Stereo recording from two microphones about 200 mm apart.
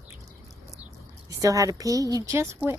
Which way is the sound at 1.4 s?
15° right (ahead or behind).